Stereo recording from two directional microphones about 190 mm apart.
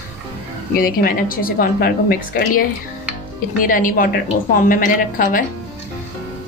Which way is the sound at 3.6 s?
45° left (ahead or behind).